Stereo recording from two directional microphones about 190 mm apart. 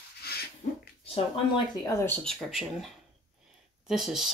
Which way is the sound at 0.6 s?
40° left (ahead or behind).